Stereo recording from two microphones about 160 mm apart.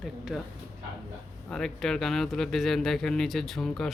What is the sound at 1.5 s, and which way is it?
Speech, 5° left (ahead or behind).